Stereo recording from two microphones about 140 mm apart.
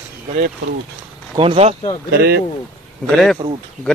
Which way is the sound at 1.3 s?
45° right (ahead or behind).